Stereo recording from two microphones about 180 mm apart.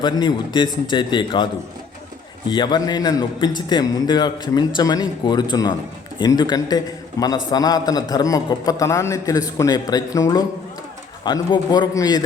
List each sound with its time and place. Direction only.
0.0 s a man's voice: 25° left (ahead or behind)
2.5 s a man's voice: 25° left (ahead or behind)